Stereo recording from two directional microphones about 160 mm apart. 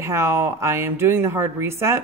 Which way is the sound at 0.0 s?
15° right (ahead or behind).